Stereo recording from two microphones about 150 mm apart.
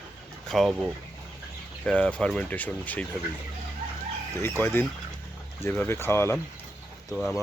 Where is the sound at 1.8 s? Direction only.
5° left (ahead or behind).